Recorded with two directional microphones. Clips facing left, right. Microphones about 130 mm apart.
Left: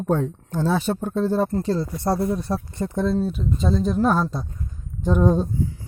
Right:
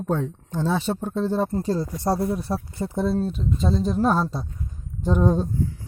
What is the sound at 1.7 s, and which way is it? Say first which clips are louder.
Speech: left 1 dB; 15° right (ahead or behind).